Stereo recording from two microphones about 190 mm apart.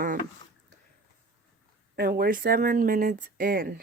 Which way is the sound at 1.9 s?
50° right (ahead or behind).